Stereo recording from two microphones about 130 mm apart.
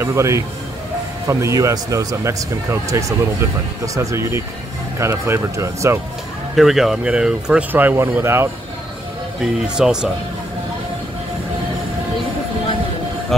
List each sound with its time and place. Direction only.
0.0 s speech: 20° right (ahead or behind)
6.5 s speech: centre (ahead or behind); by 8.5 s 20° right (ahead or behind)
9.4 s speech: 5° right (ahead or behind)
13.3 s speech: centre (ahead or behind)